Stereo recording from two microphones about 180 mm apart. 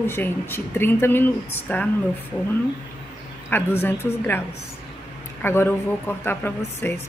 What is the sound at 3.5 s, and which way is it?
Speech, 10° left (ahead or behind).